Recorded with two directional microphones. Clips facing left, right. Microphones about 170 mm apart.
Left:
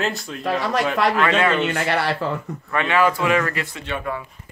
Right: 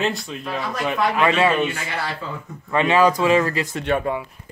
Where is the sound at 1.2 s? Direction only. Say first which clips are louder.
Right 1 dB; 10° right (ahead or behind).